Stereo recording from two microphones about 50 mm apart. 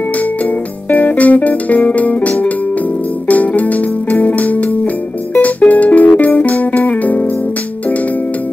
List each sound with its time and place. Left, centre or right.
0.8 s music: left